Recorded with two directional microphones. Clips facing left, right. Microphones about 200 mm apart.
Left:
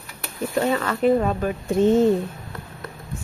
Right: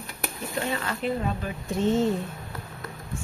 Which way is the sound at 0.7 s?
55° left (ahead or behind).